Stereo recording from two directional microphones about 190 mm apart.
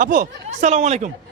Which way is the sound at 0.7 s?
35° right (ahead or behind).